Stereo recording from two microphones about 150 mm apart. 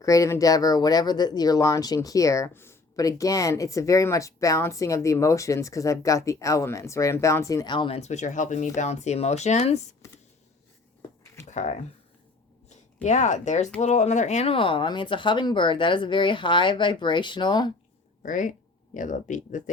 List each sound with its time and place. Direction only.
0.0 s speech: 20° left (ahead or behind); by 9.9 s 50° left (ahead or behind)
11.4 s speech: 50° left (ahead or behind); by 17.7 s 30° left (ahead or behind)
18.2 s speech: 60° left (ahead or behind)